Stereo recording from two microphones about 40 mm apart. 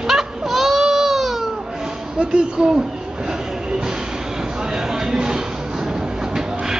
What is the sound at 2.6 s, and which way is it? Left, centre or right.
Speech, centre.